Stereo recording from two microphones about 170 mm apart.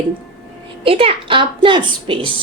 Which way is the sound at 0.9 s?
35° right (ahead or behind).